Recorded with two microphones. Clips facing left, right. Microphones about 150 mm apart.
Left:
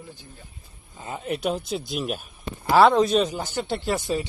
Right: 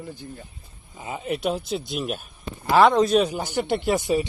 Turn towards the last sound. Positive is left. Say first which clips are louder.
# right 4 dB
turn(degrees=-15)  # may be behind; listen again after turning